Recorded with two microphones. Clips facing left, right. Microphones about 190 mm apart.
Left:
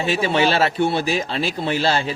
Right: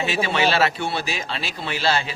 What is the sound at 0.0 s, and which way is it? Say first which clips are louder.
A man's voice: left 3 dB; 50° left (ahead or behind).